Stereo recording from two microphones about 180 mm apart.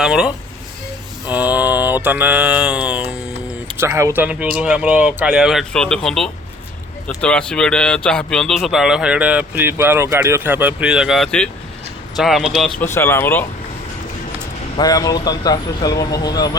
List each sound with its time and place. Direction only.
0.0 s speech: 5° right (ahead or behind)
1.3 s mantra: 10° right (ahead or behind)
3.8 s speech: 15° right (ahead or behind)
12.8 s speech: 15° left (ahead or behind)
14.8 s speech: 20° left (ahead or behind)